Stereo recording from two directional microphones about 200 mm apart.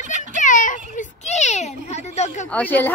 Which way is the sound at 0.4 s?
40° left (ahead or behind).